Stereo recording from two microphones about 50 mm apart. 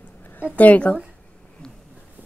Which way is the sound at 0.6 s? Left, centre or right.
Left.